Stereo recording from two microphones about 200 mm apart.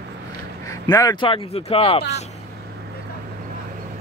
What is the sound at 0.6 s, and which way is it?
Speech, 15° left (ahead or behind).